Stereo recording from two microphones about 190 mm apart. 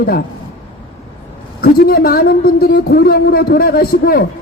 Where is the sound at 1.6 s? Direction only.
55° left (ahead or behind).